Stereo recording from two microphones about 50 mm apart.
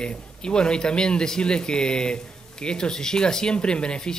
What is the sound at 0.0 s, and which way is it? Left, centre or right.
Speech, centre.